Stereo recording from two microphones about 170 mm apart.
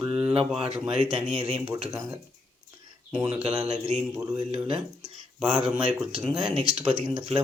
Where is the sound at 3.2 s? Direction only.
35° right (ahead or behind).